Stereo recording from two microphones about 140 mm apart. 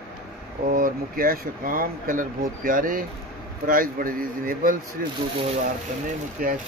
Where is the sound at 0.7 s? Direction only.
85° right.